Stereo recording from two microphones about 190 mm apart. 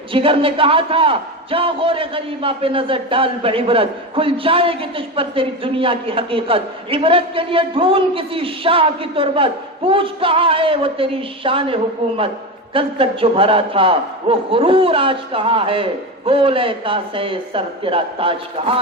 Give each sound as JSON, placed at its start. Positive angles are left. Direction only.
{"t": 0.1, "sound": "a man's voice", "side_deg": -30}